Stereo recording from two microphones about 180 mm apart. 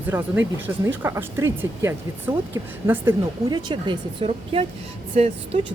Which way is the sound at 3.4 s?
25° right (ahead or behind).